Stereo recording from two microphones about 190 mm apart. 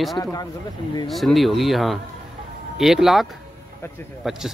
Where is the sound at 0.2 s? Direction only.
15° left (ahead or behind).